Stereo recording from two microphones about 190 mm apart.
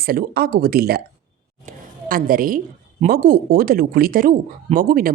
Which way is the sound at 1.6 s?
50° right (ahead or behind).